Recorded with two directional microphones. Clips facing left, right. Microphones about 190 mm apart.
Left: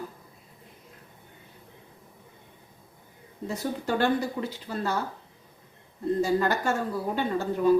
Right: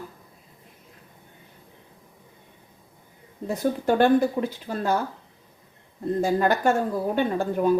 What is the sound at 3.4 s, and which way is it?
Speech, 55° right (ahead or behind).